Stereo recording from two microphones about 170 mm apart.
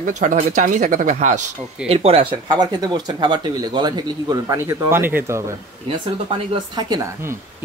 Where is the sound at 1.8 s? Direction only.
35° right (ahead or behind); by 5.4 s 15° right (ahead or behind).